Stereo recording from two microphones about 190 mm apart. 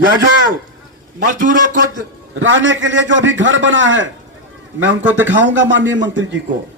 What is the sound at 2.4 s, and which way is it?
A man's voice, 80° right.